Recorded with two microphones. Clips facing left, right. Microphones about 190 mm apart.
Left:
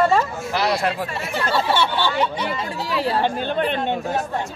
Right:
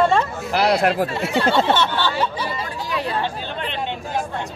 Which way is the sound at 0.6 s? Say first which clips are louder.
Right 4 dB; 65° right (ahead or behind).